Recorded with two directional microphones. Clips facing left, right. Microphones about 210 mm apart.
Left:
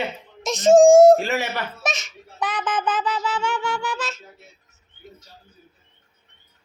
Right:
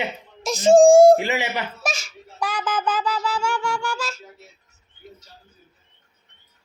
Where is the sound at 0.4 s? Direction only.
Centre (ahead or behind).